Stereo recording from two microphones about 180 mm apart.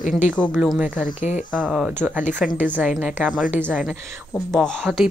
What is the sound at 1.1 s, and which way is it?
Speech, 40° left (ahead or behind).